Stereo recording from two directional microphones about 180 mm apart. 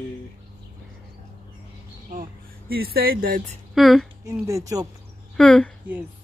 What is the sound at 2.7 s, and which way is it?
Speech, 60° right (ahead or behind).